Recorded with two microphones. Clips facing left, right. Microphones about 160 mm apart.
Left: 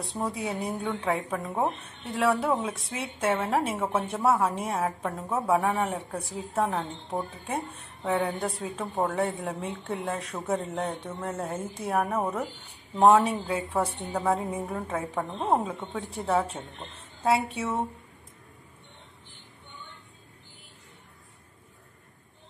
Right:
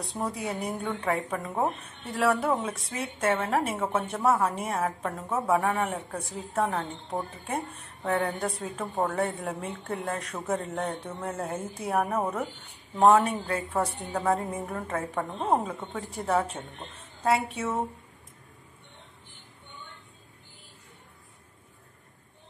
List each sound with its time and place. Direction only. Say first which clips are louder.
0.0 s speech: left 1 dB; centre (ahead or behind)